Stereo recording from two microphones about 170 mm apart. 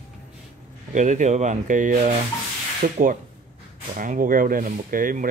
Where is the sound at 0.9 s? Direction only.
45° right (ahead or behind).